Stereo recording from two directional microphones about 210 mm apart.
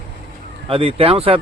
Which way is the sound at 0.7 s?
25° right (ahead or behind).